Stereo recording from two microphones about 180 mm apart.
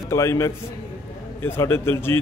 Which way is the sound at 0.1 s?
15° left (ahead or behind).